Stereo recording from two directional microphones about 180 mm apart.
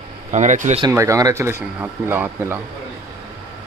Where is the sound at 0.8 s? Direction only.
15° right (ahead or behind).